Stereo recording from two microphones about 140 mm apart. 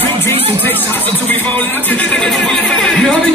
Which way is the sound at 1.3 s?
10° left (ahead or behind).